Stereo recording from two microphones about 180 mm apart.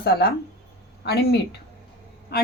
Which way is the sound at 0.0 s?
60° left (ahead or behind).